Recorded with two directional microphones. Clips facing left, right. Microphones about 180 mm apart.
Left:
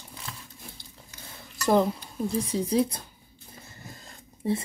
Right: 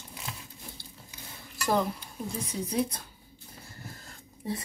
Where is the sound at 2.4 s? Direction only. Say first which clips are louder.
Left 3 dB; 30° left (ahead or behind).